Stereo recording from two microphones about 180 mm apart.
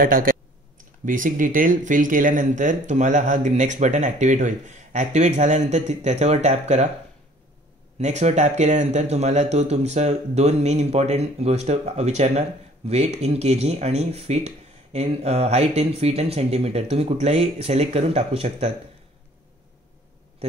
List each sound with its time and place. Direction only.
0.0 s speech: 50° right (ahead or behind)
8.0 s speech: 40° right (ahead or behind)